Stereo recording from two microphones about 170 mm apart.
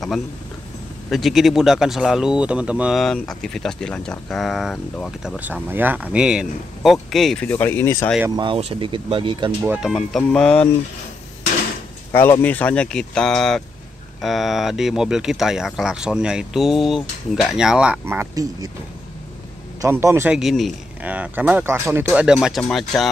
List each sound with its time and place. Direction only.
1.1 s speech: centre (ahead or behind)
8.4 s speech: 35° right (ahead or behind)
9.7 s speech: 5° right (ahead or behind)
12.1 s speech: 15° left (ahead or behind); by 18.7 s 20° right (ahead or behind)
19.8 s speech: 15° right (ahead or behind)
20.3 s speech: centre (ahead or behind)
22.0 s speech: 5° right (ahead or behind)